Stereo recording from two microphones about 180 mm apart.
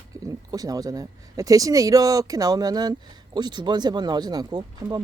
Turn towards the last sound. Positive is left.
turn(degrees=-25)  # may be behind; listen again after turning